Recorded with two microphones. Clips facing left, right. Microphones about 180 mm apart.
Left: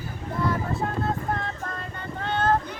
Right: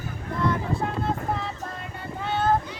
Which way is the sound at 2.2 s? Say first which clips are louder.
Even; 10° right (ahead or behind).